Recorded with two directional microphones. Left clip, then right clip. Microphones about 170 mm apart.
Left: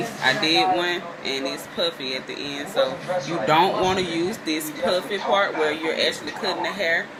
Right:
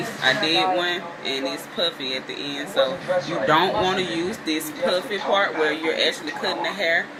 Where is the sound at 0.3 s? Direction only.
30° left (ahead or behind).